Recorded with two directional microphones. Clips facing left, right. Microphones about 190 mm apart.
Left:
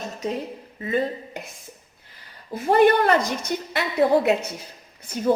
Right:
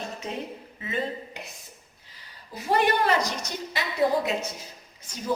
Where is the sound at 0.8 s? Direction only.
45° left (ahead or behind).